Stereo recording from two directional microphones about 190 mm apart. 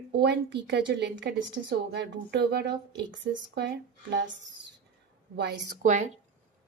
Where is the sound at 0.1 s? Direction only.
60° right (ahead or behind).